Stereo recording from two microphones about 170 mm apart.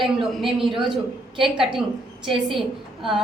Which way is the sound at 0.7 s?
30° right (ahead or behind).